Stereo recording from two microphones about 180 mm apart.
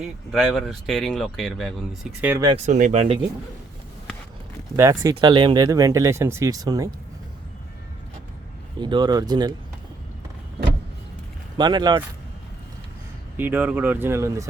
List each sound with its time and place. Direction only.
0.0 s speech: centre (ahead or behind)
2.2 s speech: 15° right (ahead or behind)
2.6 s speech: 45° right (ahead or behind)
4.8 s speech: 20° right (ahead or behind)
8.8 s speech: 25° right (ahead or behind)
11.5 s speech: 25° right (ahead or behind)
13.3 s speech: 10° right (ahead or behind)